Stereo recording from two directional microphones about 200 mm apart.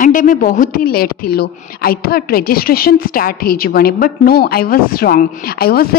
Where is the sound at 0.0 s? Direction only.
40° left (ahead or behind).